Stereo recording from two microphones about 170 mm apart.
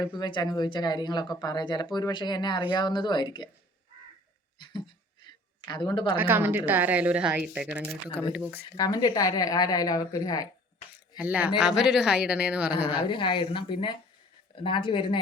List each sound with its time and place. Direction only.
0.0 s speech: 25° left (ahead or behind)
4.5 s a sound: 25° left (ahead or behind)
6.1 s speech: 10° right (ahead or behind)
8.7 s speech: 20° left (ahead or behind)
11.2 s speech: 10° right (ahead or behind)
12.9 s speech: 30° left (ahead or behind)